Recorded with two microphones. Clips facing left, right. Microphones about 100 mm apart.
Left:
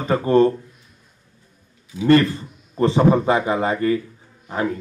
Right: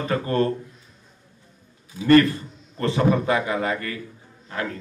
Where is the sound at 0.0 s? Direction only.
25° left (ahead or behind).